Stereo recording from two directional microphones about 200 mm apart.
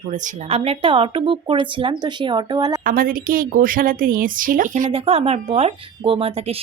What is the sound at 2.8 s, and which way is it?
A woman's voice, 45° right (ahead or behind).